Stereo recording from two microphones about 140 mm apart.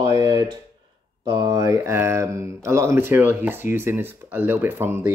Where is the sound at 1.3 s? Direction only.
25° right (ahead or behind).